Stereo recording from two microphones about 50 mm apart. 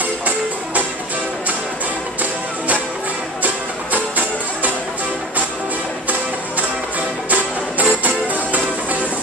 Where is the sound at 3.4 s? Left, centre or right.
Right.